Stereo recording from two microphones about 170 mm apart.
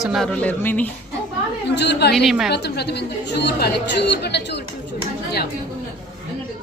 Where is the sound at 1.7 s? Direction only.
90° left.